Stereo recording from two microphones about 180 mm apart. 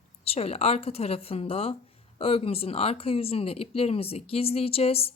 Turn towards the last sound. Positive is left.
turn(degrees=35)  # may be behind; listen again after turning